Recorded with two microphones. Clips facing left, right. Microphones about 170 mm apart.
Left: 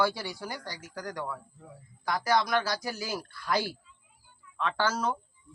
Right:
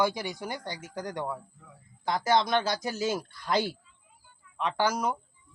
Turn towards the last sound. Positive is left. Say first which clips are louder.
# right 1 dB
turn(degrees=-15)  # may be behind; listen again after turning